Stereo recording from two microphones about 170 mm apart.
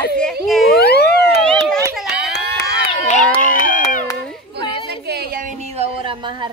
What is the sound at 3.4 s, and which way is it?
Speech, 50° left (ahead or behind).